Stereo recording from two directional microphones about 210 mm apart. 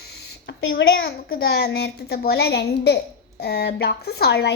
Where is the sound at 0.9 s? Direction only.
50° left (ahead or behind).